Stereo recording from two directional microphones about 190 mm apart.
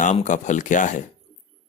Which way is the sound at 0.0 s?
40° left (ahead or behind).